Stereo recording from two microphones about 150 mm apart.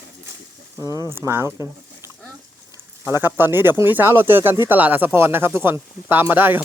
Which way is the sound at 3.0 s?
15° right (ahead or behind).